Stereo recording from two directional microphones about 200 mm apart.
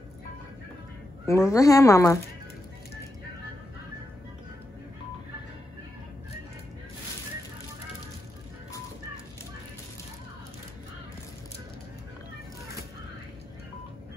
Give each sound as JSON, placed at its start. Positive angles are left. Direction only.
{"t": 1.2, "sound": "speech", "side_deg": 15}